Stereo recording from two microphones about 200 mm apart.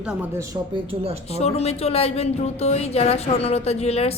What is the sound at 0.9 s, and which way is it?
Speech, 30° right (ahead or behind).